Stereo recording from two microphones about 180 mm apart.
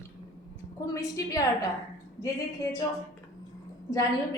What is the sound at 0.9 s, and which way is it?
Speech, 20° left (ahead or behind).